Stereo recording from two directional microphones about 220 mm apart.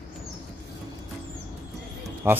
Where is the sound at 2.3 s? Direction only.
10° right (ahead or behind).